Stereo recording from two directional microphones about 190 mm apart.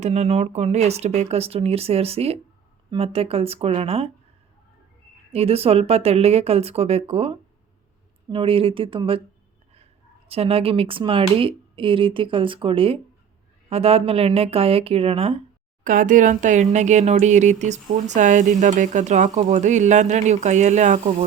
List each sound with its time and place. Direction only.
0.0 s speech: 35° right (ahead or behind)
5.3 s speech: 30° right (ahead or behind)
15.8 s speech: 45° right (ahead or behind)